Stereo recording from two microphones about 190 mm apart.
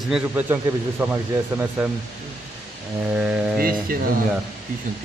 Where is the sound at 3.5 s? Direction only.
50° right (ahead or behind).